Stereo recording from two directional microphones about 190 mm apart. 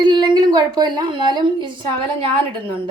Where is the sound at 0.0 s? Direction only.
20° right (ahead or behind).